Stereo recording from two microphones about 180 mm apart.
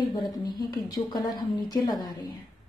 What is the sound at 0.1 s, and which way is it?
A woman's voice, 25° left (ahead or behind).